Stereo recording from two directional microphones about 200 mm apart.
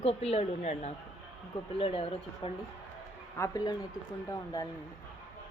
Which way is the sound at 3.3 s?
15° left (ahead or behind).